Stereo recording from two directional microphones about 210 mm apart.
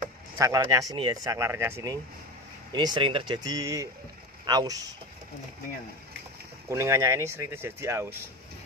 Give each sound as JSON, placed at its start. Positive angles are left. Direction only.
{"t": 0.4, "sound": "speech", "side_deg": -15}
{"t": 6.7, "sound": "speech", "side_deg": -15}